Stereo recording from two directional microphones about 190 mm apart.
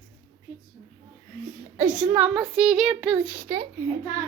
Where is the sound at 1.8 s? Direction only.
5° right (ahead or behind).